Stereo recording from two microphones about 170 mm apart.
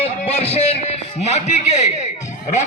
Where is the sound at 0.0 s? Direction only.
35° left (ahead or behind).